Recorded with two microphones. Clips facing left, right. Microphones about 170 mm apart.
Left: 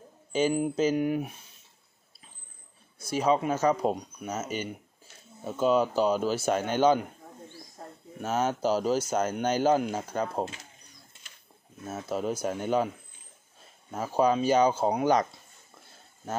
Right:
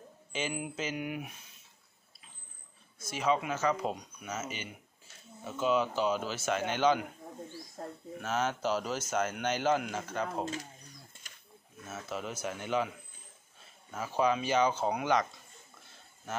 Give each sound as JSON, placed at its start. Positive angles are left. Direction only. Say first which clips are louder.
{"t": 0.3, "sound": "speech", "louder": "left 11 dB", "side_deg": 40}
{"t": 3.0, "sound": "speech", "louder": "left 5 dB", "side_deg": 35}
{"t": 8.2, "sound": "speech", "louder": "left 5 dB", "side_deg": 40}
{"t": 11.8, "sound": "speech", "louder": "left 8 dB", "side_deg": 35}
{"t": 13.9, "sound": "speech", "louder": "left 5 dB", "side_deg": 40}